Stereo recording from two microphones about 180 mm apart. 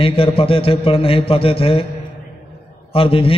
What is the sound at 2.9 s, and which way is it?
Speech, 30° left (ahead or behind).